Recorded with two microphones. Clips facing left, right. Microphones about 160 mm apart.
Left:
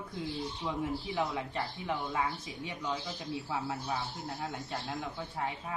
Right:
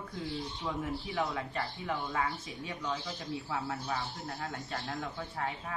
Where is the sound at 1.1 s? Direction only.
15° left (ahead or behind).